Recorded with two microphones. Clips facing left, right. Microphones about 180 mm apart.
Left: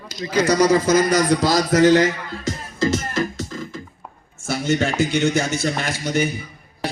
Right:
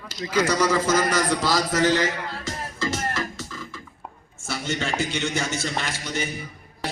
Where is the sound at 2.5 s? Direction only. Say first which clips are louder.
Left 9 dB; 40° left (ahead or behind).